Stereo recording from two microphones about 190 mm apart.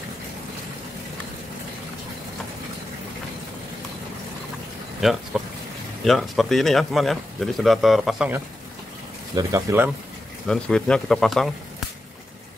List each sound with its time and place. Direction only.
5.0 s a man's voice: centre (ahead or behind)
9.3 s speech: 15° right (ahead or behind)
10.4 s a man's voice: 5° left (ahead or behind)